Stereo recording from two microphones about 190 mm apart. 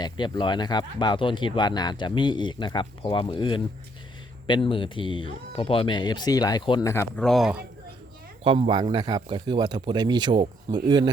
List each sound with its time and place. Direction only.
0.0 s speech: 25° left (ahead or behind)
7.2 s speech: centre (ahead or behind)
8.4 s speech: 25° right (ahead or behind)